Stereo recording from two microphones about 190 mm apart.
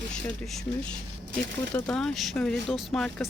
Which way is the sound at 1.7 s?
5° left (ahead or behind).